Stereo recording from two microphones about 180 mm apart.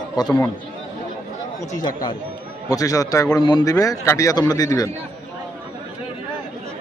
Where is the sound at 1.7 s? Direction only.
20° left (ahead or behind).